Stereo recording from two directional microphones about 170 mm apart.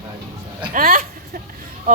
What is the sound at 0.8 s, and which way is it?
Speech, 55° right (ahead or behind).